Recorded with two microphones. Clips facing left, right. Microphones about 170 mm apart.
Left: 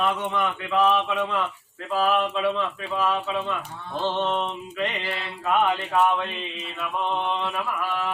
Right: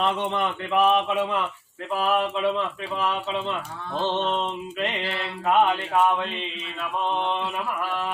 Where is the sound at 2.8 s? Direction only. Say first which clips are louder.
Left 2 dB; 20° right (ahead or behind).